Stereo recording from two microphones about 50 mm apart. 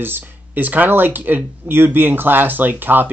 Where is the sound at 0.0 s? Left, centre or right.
Right.